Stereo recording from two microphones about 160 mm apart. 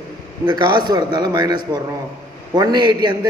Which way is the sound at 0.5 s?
25° right (ahead or behind).